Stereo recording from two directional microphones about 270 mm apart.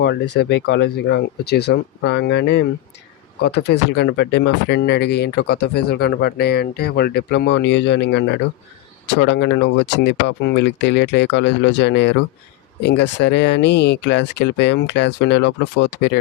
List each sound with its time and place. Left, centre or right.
0.3 s speech: left